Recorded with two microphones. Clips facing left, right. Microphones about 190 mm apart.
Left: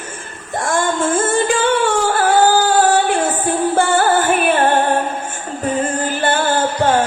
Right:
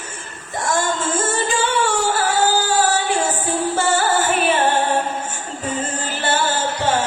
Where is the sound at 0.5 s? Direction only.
55° left (ahead or behind).